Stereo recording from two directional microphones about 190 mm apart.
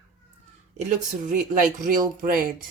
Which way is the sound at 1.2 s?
40° right (ahead or behind).